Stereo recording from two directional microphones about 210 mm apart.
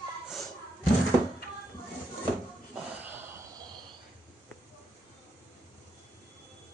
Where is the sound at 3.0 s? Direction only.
10° right (ahead or behind).